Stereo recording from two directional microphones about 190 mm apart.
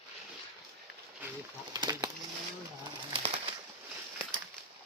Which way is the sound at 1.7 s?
20° right (ahead or behind).